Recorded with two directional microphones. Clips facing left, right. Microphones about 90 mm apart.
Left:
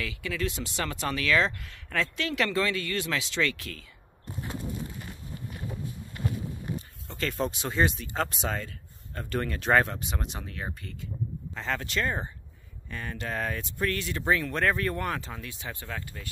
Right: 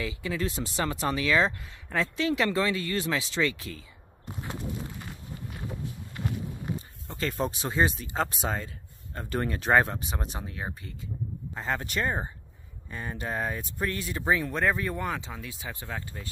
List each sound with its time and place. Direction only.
0.0 s speech: 25° right (ahead or behind)
7.2 s speech: 25° right (ahead or behind)
8.2 s speech: 15° right (ahead or behind)
14.5 s speech: 5° right (ahead or behind)
15.7 s speech: 20° right (ahead or behind)